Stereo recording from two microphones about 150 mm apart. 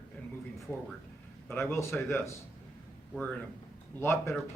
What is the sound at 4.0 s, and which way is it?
Speech, 15° left (ahead or behind).